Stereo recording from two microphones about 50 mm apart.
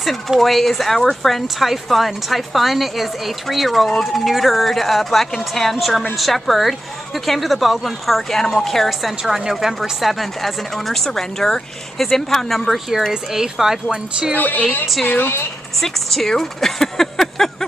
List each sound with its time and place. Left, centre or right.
0.4 s speech: centre
9.2 s speech: centre
13.1 s speech: centre
14.3 s a woman's voice: left
15.8 s speech: centre